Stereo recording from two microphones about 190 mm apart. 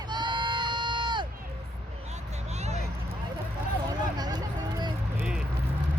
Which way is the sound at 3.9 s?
20° right (ahead or behind).